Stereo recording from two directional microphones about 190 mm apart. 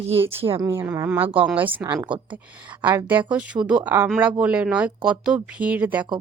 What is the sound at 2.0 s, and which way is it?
Speech, 25° right (ahead or behind).